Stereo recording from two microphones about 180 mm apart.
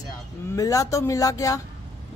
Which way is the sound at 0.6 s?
20° left (ahead or behind).